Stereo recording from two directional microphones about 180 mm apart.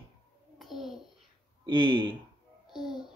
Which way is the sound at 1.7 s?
25° right (ahead or behind).